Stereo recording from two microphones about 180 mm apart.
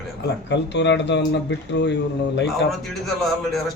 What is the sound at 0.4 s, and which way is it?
Speech, 75° left (ahead or behind).